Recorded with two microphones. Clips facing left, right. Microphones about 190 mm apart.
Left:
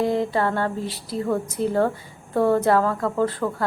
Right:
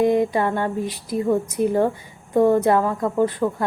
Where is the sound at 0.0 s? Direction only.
15° right (ahead or behind).